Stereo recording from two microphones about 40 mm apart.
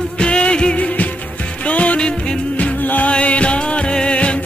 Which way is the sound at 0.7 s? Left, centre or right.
Left.